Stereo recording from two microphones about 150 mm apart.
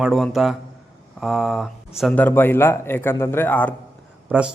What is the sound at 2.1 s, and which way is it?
Speech, 15° left (ahead or behind).